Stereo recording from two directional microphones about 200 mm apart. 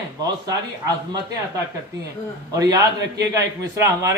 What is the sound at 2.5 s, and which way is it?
A man's voice, 15° right (ahead or behind).